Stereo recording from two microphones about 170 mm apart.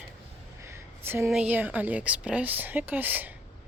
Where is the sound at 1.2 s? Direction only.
5° right (ahead or behind).